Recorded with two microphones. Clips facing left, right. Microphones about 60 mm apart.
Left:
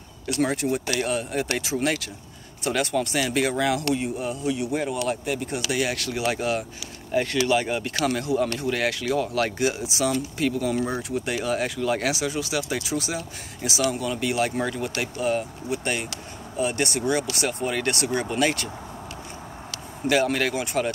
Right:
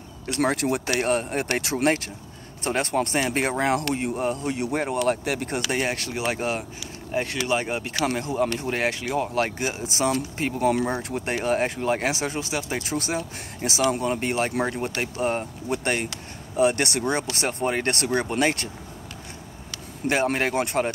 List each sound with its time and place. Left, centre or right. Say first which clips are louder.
0.3 s speech: right 1 dB; right
0.6 s speech: right 1 dB; right
0.9 s speech: right 2 dB; right
2.6 s speech: even; right
5.2 s speech: right 1 dB; right
5.8 s speech: left 1 dB; right
11.0 s speech: even; right
12.8 s speech: right 1 dB; right
17.0 s speech: left 1 dB; right
20.1 s speech: left 1 dB; right
20.5 s speech: right 2 dB; right